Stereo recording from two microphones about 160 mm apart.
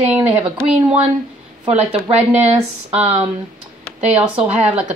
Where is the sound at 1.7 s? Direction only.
40° right (ahead or behind).